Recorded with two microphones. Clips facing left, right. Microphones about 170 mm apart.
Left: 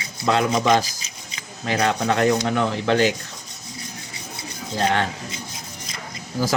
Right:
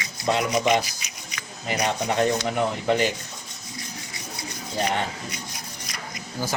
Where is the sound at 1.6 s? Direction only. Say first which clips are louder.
Left 4 dB; 90° left.